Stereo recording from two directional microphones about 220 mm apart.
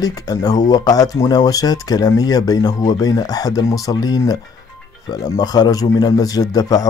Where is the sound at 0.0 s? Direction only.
15° left (ahead or behind).